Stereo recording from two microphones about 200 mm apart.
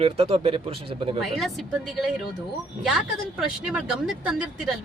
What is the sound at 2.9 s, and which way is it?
Speech, 5° right (ahead or behind).